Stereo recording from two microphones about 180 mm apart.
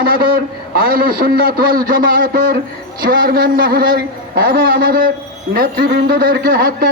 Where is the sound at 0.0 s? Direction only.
55° right (ahead or behind).